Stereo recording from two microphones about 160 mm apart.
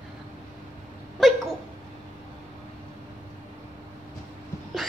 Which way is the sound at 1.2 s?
Centre (ahead or behind).